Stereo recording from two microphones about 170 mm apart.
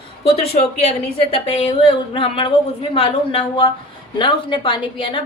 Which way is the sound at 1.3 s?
35° left (ahead or behind).